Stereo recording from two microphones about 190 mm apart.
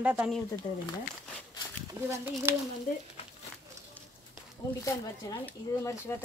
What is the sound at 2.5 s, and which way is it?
Speech, 10° right (ahead or behind).